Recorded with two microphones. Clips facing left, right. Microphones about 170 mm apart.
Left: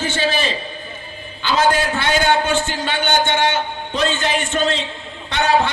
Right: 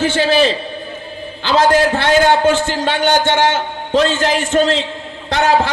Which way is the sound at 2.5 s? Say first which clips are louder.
Right 4 dB; 90° right.